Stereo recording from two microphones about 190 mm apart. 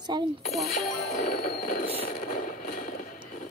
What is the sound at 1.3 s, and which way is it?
Fireworks, 55° left (ahead or behind).